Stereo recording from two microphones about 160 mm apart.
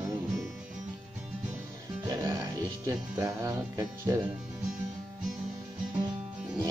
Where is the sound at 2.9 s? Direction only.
20° right (ahead or behind).